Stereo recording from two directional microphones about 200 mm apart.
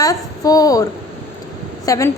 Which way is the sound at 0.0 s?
15° left (ahead or behind).